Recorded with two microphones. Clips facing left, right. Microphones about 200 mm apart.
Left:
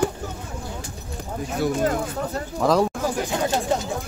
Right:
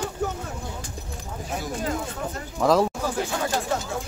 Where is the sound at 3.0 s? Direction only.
20° left (ahead or behind).